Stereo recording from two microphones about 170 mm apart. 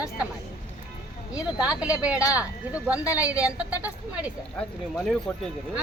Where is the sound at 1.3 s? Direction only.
5° right (ahead or behind).